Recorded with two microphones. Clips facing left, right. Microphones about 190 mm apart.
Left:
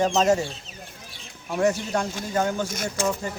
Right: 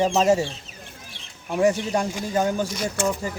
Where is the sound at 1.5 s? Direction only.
15° right (ahead or behind).